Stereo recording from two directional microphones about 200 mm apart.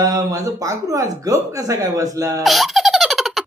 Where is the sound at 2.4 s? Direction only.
Centre (ahead or behind).